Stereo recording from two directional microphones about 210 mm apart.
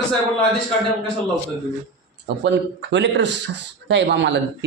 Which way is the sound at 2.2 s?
55° right (ahead or behind).